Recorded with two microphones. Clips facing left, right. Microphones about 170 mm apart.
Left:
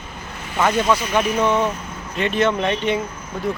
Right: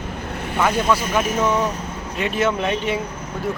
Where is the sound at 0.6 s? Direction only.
5° right (ahead or behind).